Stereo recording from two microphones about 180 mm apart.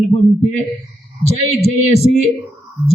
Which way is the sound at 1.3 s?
35° left (ahead or behind).